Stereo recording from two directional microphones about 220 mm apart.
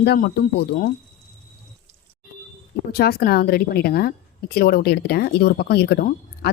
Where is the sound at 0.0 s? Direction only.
45° left (ahead or behind).